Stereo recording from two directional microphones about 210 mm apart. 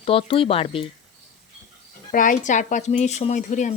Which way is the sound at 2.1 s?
40° left (ahead or behind).